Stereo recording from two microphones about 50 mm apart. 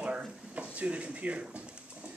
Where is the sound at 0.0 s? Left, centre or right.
Right.